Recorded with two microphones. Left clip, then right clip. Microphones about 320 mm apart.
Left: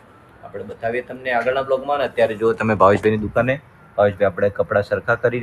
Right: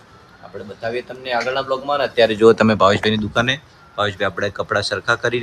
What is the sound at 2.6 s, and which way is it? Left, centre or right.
Speech, centre.